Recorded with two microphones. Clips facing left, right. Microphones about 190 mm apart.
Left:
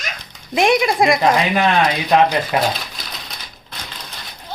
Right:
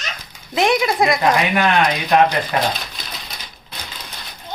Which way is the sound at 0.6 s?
25° left (ahead or behind).